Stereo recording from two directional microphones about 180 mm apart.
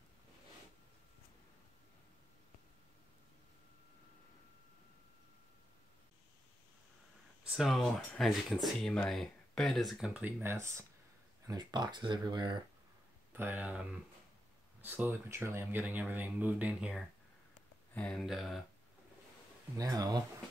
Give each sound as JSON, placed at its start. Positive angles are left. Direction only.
{"t": 7.4, "sound": "speech", "side_deg": 0}
{"t": 13.3, "sound": "speech", "side_deg": -10}
{"t": 17.9, "sound": "speech", "side_deg": 5}
{"t": 19.8, "sound": "speech", "side_deg": -20}